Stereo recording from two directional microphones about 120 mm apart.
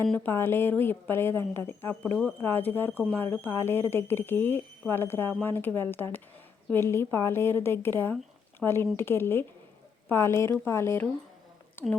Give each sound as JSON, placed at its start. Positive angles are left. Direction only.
{"t": 0.1, "sound": "speech", "side_deg": 15}